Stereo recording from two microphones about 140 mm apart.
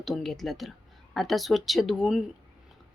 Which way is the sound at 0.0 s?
Centre (ahead or behind).